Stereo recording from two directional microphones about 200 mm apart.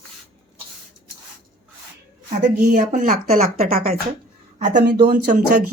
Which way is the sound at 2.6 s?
40° right (ahead or behind).